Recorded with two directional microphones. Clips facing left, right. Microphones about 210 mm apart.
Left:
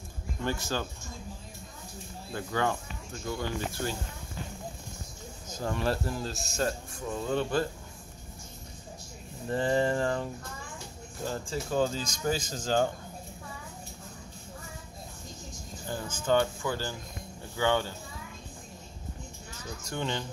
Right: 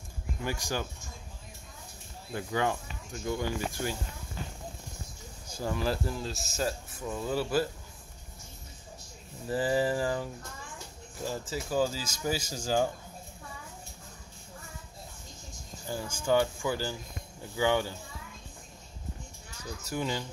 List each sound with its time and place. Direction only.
0.4 s speech: 10° right (ahead or behind)
2.3 s speech: 15° right (ahead or behind)
5.5 s speech: 5° right (ahead or behind)
9.5 s speech: 5° right (ahead or behind)
15.9 s speech: 10° right (ahead or behind)
19.8 s speech: 5° right (ahead or behind)